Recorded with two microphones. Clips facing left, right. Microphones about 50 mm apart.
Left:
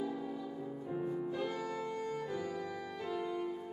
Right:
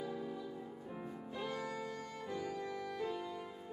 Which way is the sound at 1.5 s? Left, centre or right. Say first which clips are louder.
Left 2 dB; centre.